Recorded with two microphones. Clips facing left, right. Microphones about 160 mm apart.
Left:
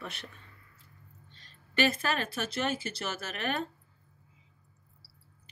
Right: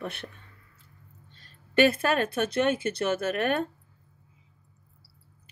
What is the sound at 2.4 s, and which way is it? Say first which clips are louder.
Speech: right 8 dB; 55° right (ahead or behind).